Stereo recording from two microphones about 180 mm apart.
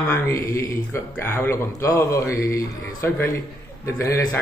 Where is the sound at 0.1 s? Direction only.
15° left (ahead or behind).